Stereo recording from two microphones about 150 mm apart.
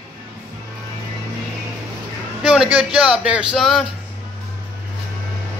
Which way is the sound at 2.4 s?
5° right (ahead or behind).